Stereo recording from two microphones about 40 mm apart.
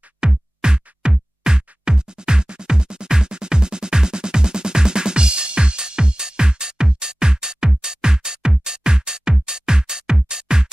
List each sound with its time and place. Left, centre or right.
0.2 s music: right